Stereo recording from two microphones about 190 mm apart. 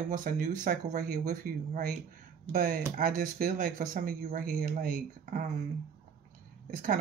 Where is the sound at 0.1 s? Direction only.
45° right (ahead or behind).